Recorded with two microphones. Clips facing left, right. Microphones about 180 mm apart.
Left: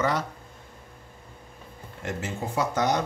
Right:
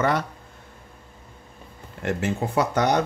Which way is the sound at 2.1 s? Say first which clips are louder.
Right 7 dB; 65° right (ahead or behind).